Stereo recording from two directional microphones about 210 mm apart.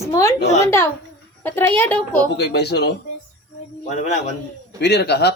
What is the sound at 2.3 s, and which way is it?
Speech, 50° left (ahead or behind).